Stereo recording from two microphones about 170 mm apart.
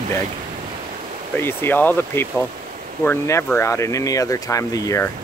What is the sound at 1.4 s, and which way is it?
Speech, 15° left (ahead or behind).